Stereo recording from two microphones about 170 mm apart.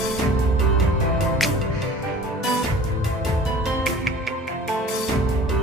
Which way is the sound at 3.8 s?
Centre (ahead or behind).